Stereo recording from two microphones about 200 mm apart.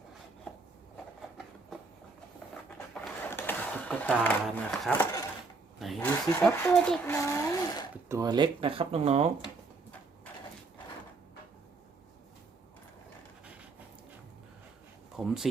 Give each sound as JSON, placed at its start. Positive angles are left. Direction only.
{"t": 3.2, "sound": "a sound", "side_deg": 10}
{"t": 4.2, "sound": "speech", "side_deg": 10}
{"t": 7.1, "sound": "speech", "side_deg": 15}
{"t": 8.1, "sound": "speech", "side_deg": -20}
{"t": 15.1, "sound": "speech", "side_deg": 0}